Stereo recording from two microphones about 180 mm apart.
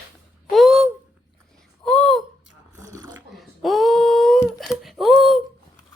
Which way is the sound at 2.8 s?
20° right (ahead or behind).